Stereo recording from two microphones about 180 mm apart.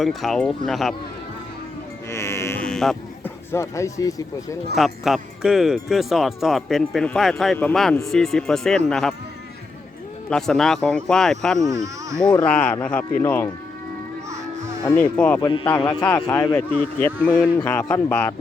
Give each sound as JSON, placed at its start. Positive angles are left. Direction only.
{"t": 0.0, "sound": "speech", "side_deg": 0}
{"t": 2.0, "sound": "sheep", "side_deg": 15}
{"t": 3.5, "sound": "speech", "side_deg": 15}
{"t": 4.7, "sound": "speech", "side_deg": 0}
{"t": 10.2, "sound": "speech", "side_deg": 5}
{"t": 11.7, "sound": "speech", "side_deg": -20}
{"t": 12.2, "sound": "a man's voice", "side_deg": 25}
{"t": 12.5, "sound": "speech", "side_deg": 5}
{"t": 14.3, "sound": "music", "side_deg": -15}
{"t": 15.4, "sound": "a man's voice", "side_deg": 25}
{"t": 16.8, "sound": "speech", "side_deg": 10}